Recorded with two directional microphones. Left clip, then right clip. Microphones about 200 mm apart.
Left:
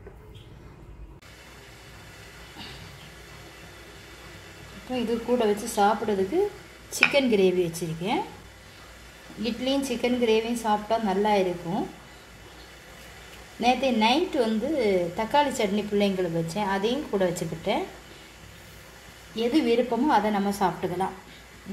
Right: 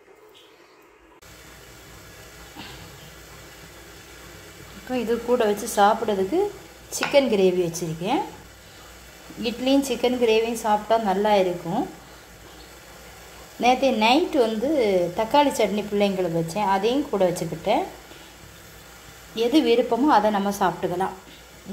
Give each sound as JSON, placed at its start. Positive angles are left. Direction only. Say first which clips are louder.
{"t": 4.9, "sound": "a woman's voice", "louder": "right 4 dB", "side_deg": -5}
{"t": 9.4, "sound": "a woman's voice", "louder": "right 5 dB", "side_deg": -5}
{"t": 13.6, "sound": "a woman's voice", "louder": "right 4 dB", "side_deg": -5}
{"t": 19.4, "sound": "a woman's voice", "louder": "right 4 dB", "side_deg": 0}